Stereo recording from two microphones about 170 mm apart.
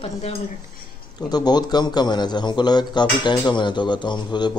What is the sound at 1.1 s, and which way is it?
A man's voice, 25° left (ahead or behind).